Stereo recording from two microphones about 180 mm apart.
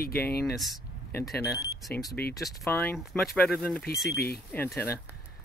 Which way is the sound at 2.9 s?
Centre (ahead or behind).